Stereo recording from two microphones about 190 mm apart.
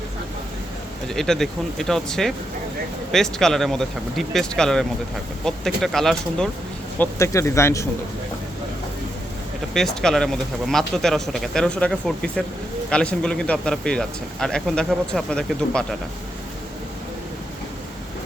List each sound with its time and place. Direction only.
1.0 s speech: centre (ahead or behind)
7.0 s speech: 15° left (ahead or behind)
9.7 s speech: centre (ahead or behind)